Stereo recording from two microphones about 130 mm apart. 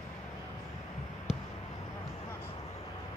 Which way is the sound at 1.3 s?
5° right (ahead or behind).